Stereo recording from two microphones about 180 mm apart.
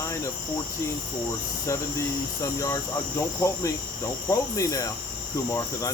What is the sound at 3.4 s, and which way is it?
Cricket, 15° left (ahead or behind).